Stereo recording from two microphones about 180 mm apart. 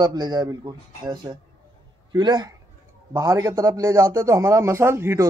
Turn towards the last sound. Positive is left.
turn(degrees=-15)  # may be behind; listen again after turning